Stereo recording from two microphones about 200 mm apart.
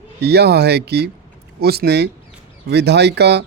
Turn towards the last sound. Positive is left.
turn(degrees=-55)  # may be behind; listen again after turning